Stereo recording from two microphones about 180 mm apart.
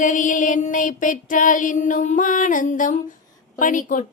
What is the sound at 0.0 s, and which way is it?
Music, 45° left (ahead or behind).